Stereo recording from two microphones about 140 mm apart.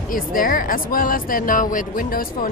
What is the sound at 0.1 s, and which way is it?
Speech, 85° left.